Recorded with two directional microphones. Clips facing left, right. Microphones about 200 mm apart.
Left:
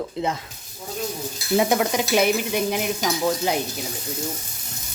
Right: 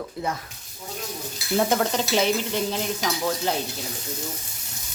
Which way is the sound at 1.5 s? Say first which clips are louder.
Left 2 dB; 10° left (ahead or behind).